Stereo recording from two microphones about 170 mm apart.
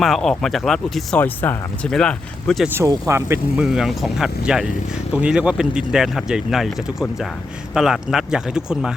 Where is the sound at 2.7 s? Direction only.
15° right (ahead or behind).